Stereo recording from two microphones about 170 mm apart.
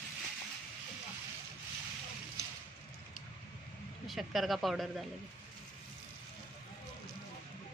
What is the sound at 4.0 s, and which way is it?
Speech, centre (ahead or behind).